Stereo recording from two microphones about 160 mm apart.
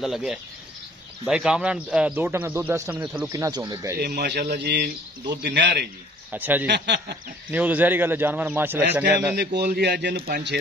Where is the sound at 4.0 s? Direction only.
90° right.